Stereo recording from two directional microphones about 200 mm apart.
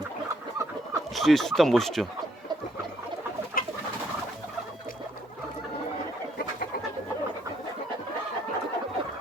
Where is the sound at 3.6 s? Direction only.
45° left (ahead or behind).